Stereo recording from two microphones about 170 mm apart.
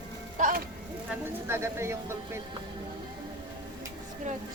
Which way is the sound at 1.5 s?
15° right (ahead or behind).